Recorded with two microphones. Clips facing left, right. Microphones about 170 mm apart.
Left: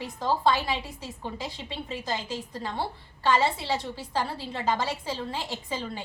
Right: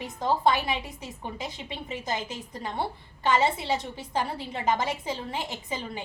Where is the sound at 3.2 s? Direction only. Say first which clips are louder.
Even; 20° right (ahead or behind).